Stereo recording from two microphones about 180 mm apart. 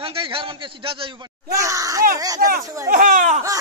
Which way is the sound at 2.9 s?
45° right (ahead or behind).